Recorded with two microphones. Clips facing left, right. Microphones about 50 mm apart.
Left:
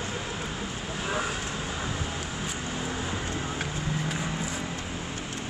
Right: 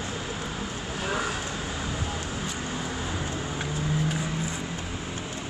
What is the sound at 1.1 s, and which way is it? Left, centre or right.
Vehicle, centre.